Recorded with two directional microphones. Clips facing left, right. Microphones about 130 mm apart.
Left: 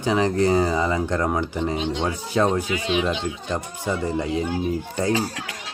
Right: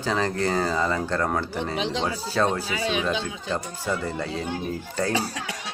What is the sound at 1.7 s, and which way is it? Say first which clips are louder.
Speech: left 2 dB; 90° right.